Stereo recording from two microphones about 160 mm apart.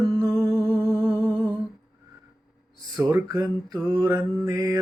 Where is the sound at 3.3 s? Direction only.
25° right (ahead or behind).